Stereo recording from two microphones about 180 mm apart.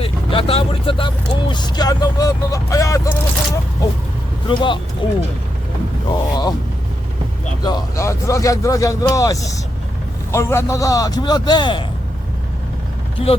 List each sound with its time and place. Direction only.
0.0 s speech: 30° left (ahead or behind)
6.1 s speech: 20° left (ahead or behind)
7.6 s a man's voice: 25° left (ahead or behind)